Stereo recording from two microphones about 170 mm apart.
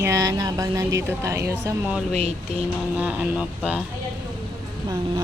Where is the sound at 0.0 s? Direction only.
20° right (ahead or behind).